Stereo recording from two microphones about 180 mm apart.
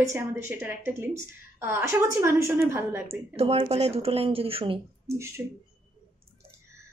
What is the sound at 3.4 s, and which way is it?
Speech, 35° right (ahead or behind).